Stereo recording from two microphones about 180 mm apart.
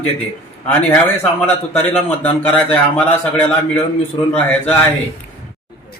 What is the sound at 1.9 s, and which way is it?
A man's voice, 10° left (ahead or behind).